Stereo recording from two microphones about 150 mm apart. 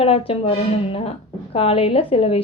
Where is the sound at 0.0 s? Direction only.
40° left (ahead or behind).